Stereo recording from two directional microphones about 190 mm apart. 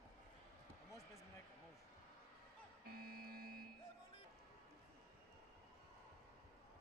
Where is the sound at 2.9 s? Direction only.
50° right (ahead or behind).